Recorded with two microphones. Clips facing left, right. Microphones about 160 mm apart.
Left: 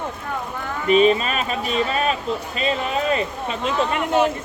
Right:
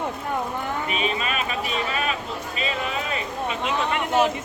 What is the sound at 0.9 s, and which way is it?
Speech, 40° left (ahead or behind).